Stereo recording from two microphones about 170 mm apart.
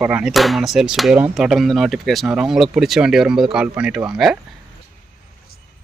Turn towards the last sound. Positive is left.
turn(degrees=0)  # may be behind; listen again after turning